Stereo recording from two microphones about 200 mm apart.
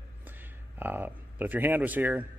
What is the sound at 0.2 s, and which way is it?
Speech, 10° right (ahead or behind).